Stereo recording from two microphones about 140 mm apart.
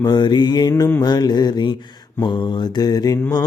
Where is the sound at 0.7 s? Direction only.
15° left (ahead or behind).